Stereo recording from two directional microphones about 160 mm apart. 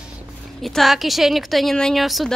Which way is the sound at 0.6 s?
Centre (ahead or behind).